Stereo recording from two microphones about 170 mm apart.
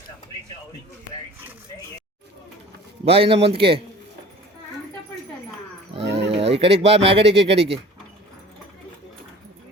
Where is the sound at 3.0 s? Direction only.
35° right (ahead or behind).